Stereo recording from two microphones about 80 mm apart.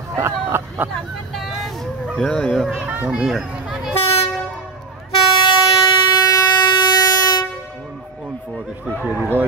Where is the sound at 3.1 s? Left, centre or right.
Centre.